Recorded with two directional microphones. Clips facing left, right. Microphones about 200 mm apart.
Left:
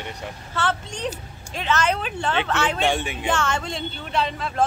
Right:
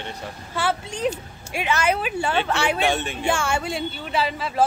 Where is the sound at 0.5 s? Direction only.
10° right (ahead or behind).